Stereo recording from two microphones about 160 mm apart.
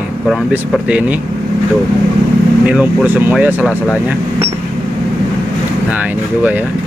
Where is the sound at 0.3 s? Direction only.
10° right (ahead or behind).